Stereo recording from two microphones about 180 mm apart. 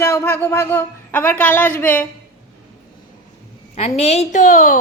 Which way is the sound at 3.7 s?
35° left (ahead or behind).